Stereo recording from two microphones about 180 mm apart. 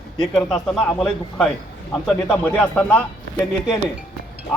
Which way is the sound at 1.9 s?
5° left (ahead or behind).